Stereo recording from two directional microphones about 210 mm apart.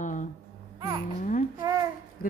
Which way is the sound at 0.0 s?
35° left (ahead or behind).